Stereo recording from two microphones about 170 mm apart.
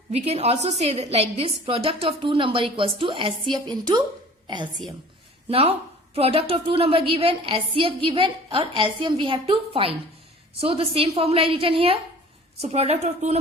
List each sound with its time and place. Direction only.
0.1 s a woman's voice: 40° right (ahead or behind)